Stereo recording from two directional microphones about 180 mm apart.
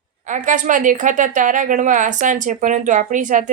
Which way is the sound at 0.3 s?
45° right (ahead or behind).